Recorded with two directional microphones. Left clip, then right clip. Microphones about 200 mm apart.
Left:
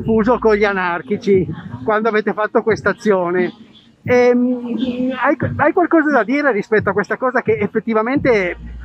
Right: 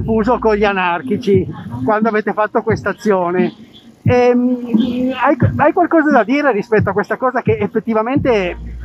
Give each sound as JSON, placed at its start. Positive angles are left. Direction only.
{"t": 0.0, "sound": "speech", "side_deg": 0}
{"t": 4.7, "sound": "speech", "side_deg": -30}
{"t": 5.1, "sound": "speech", "side_deg": 0}